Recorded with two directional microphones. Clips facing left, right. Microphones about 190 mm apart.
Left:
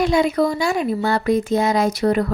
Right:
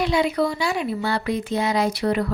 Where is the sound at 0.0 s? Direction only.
45° left (ahead or behind).